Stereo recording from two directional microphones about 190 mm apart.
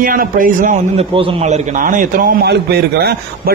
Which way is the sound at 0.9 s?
30° right (ahead or behind).